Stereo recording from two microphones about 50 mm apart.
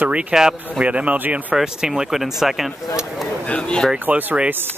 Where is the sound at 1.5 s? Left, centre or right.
Centre.